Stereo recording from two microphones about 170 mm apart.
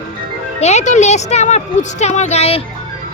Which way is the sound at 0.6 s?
40° left (ahead or behind).